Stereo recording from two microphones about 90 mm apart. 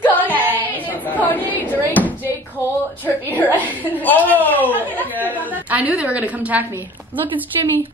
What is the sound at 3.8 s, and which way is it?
Speech, 20° left (ahead or behind).